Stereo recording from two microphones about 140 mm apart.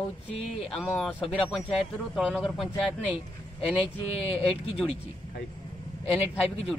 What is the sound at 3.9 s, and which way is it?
Speech, 40° left (ahead or behind).